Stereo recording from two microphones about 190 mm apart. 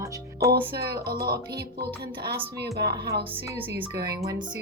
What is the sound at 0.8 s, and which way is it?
Speech, 55° right (ahead or behind).